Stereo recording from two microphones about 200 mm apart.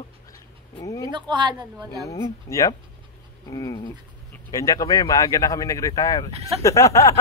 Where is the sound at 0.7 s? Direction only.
15° left (ahead or behind).